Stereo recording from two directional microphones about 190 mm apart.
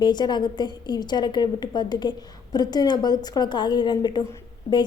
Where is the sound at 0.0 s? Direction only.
25° left (ahead or behind).